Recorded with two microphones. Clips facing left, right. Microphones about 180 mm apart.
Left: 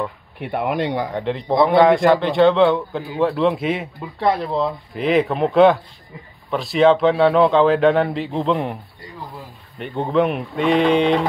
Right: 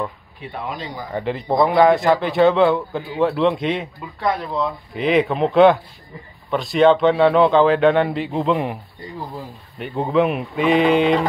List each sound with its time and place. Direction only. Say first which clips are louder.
0.4 s speech: left 8 dB; 65° left (ahead or behind)
1.1 s a man's voice: right 3 dB; centre (ahead or behind)
4.2 s speech: left 3 dB; 30° left (ahead or behind)
4.9 s a man's voice: right 1 dB; centre (ahead or behind)
9.8 s a man's voice: even; centre (ahead or behind)